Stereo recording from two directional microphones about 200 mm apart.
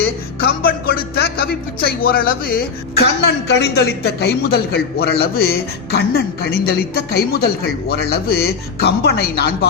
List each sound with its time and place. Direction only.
0.4 s a man's voice: 50° left (ahead or behind)